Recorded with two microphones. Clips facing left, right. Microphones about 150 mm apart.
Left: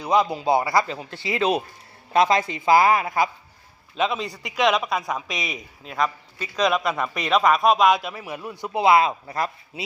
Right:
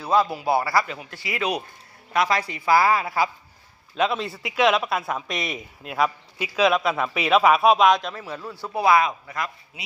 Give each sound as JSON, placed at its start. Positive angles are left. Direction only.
{"t": 0.0, "sound": "a man's voice", "side_deg": 15}
{"t": 3.9, "sound": "speech", "side_deg": 0}